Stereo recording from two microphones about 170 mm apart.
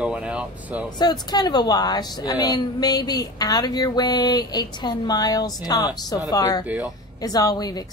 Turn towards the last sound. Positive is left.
turn(degrees=20)  # may be behind; listen again after turning